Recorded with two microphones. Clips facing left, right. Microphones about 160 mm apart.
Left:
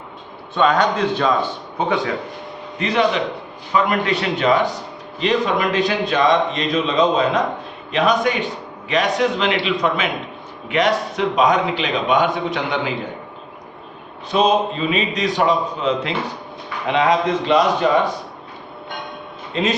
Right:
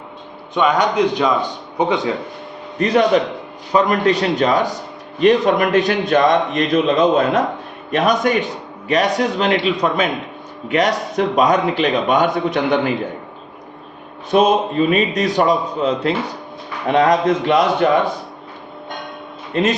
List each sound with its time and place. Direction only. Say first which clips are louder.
0.5 s a man's voice: right 1 dB; 15° right (ahead or behind)
2.7 s a man's voice: right 4 dB; 45° right (ahead or behind)
14.3 s a man's voice: right 3 dB; 50° right (ahead or behind)
19.5 s a man's voice: right 4 dB; 50° right (ahead or behind)